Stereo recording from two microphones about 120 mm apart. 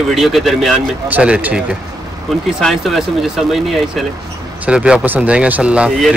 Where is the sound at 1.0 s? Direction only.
10° right (ahead or behind).